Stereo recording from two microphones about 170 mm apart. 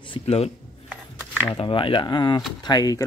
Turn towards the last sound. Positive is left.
turn(degrees=20)  # may be behind; listen again after turning